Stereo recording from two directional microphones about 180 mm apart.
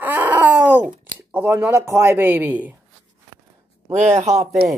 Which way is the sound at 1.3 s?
10° right (ahead or behind).